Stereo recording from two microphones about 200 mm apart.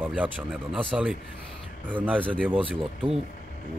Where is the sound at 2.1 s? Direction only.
5° left (ahead or behind).